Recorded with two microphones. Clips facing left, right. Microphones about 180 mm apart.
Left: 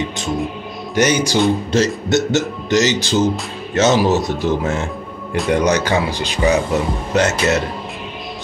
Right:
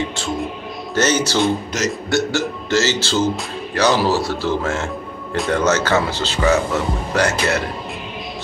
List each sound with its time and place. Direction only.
0.9 s speech: 15° left (ahead or behind)
1.7 s speech: 25° left (ahead or behind)